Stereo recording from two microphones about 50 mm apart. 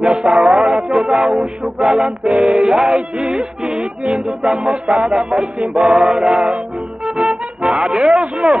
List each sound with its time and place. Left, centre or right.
0.3 s music: centre